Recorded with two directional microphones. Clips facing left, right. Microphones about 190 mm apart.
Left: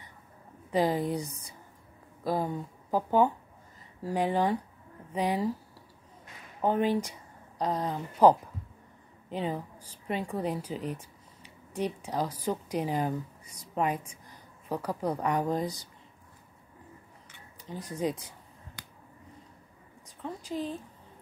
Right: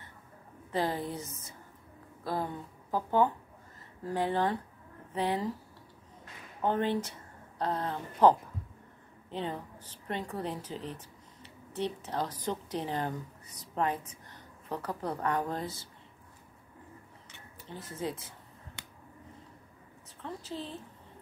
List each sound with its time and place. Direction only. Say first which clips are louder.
0.7 s a woman's voice: left 5 dB; 15° left (ahead or behind)
6.6 s a woman's voice: left 3 dB; 10° left (ahead or behind)
17.6 s a woman's voice: left 5 dB; 15° left (ahead or behind)
20.2 s a sound: left 5 dB; 15° left (ahead or behind)